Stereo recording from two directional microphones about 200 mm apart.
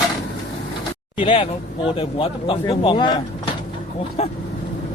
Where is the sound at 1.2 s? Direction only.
25° left (ahead or behind).